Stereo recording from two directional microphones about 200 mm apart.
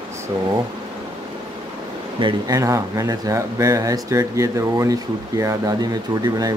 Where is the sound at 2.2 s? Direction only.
15° right (ahead or behind).